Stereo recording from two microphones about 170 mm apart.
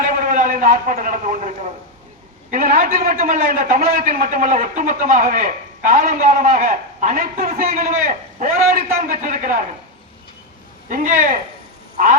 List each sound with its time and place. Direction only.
0.0 s a man's voice: 50° right (ahead or behind)
10.8 s a man's voice: 50° right (ahead or behind)